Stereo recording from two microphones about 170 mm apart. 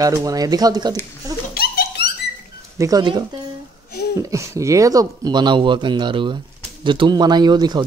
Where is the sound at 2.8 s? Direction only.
25° right (ahead or behind).